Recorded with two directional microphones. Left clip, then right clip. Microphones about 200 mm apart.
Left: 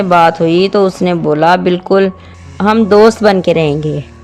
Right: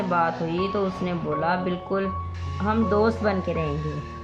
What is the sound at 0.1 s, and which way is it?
Speech, 50° left (ahead or behind).